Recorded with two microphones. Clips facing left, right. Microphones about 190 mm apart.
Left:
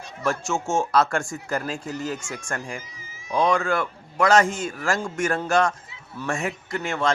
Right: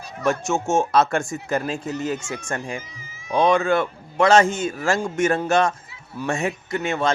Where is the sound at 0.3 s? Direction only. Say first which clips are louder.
Right 4 dB; 20° right (ahead or behind).